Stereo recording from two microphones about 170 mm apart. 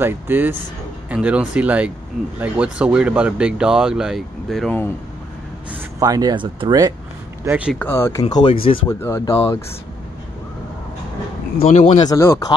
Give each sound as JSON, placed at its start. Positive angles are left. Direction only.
{"t": 0.0, "sound": "speech", "side_deg": -10}
{"t": 5.7, "sound": "speech", "side_deg": -20}
{"t": 7.4, "sound": "speech", "side_deg": -10}
{"t": 7.8, "sound": "speech", "side_deg": 15}
{"t": 8.3, "sound": "speech", "side_deg": 30}
{"t": 8.8, "sound": "speech", "side_deg": 15}
{"t": 11.7, "sound": "speech", "side_deg": 45}
{"t": 12.0, "sound": "speech", "side_deg": 20}